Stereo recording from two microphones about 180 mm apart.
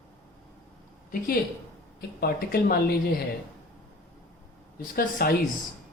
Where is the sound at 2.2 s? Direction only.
55° left (ahead or behind).